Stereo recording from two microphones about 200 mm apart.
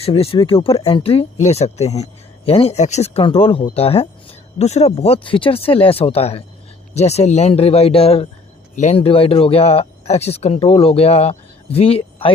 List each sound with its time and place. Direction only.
0.0 s speech: 30° left (ahead or behind)